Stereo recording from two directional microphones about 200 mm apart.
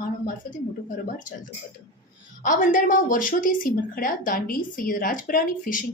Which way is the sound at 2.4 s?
40° left (ahead or behind).